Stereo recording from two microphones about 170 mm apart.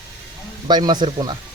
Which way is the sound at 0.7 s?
25° right (ahead or behind).